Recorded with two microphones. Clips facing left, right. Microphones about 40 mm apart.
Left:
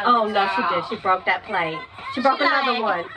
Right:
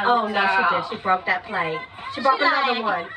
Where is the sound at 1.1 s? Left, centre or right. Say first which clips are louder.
Left 1 dB; centre.